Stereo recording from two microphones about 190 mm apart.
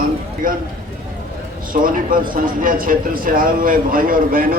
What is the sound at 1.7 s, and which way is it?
Speech, 45° right (ahead or behind).